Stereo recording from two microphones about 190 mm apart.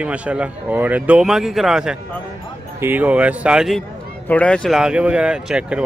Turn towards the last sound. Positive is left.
turn(degrees=-5)  # may be behind; listen again after turning